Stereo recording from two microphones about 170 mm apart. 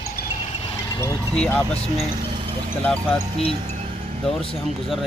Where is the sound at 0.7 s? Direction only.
15° left (ahead or behind).